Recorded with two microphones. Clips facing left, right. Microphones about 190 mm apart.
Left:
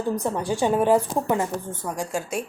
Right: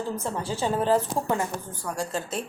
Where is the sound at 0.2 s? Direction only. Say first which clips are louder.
Left 5 dB; 15° left (ahead or behind).